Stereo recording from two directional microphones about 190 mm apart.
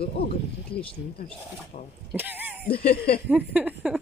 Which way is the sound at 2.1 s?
10° right (ahead or behind).